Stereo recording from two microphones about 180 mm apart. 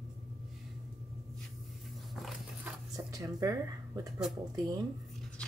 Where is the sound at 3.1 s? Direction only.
20° right (ahead or behind).